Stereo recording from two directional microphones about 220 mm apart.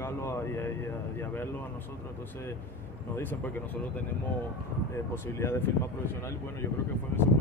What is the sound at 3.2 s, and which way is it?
Speech, 10° left (ahead or behind).